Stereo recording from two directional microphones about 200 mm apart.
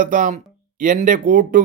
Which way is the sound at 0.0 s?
40° right (ahead or behind).